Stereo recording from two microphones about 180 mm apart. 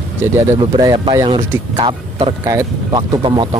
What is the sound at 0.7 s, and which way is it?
Speech, 25° right (ahead or behind).